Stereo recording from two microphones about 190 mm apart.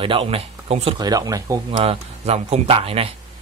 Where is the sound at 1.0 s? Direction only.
20° right (ahead or behind).